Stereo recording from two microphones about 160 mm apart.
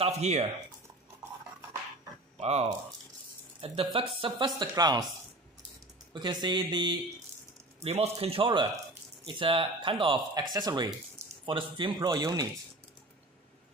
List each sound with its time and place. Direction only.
0.0 s speech: 40° right (ahead or behind)
2.3 s speech: 45° right (ahead or behind); by 5.0 s 25° right (ahead or behind)
6.1 s speech: 25° right (ahead or behind)
7.8 s speech: 40° right (ahead or behind)